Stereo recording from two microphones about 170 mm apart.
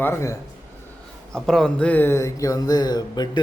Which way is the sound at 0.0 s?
15° left (ahead or behind).